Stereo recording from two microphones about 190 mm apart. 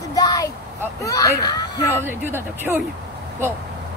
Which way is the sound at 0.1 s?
20° left (ahead or behind).